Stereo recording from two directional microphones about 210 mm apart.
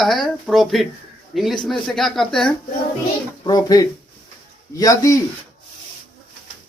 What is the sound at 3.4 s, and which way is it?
Speech, 20° left (ahead or behind).